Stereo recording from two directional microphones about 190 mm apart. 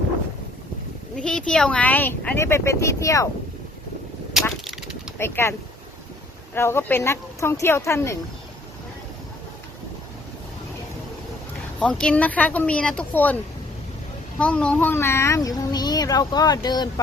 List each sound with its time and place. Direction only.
1.1 s speech: 5° left (ahead or behind)
4.6 s a sound: 5° right (ahead or behind)
5.1 s speech: 10° left (ahead or behind)
11.8 s speech: 5° left (ahead or behind); by 16.9 s 20° left (ahead or behind)